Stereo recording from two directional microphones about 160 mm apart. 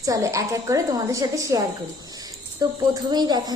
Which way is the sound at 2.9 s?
25° right (ahead or behind).